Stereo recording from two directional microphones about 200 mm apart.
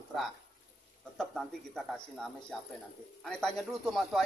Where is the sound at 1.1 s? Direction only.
Centre (ahead or behind).